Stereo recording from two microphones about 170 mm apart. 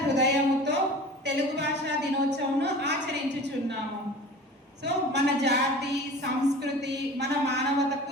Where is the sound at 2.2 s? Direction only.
85° right.